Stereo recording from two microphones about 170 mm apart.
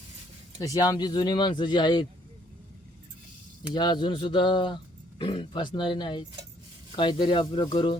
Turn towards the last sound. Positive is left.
turn(degrees=30)  # may be behind; listen again after turning